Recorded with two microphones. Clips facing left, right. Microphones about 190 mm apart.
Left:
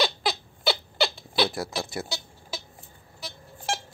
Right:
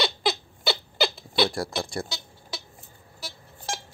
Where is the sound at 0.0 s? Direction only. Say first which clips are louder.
Even; centre (ahead or behind).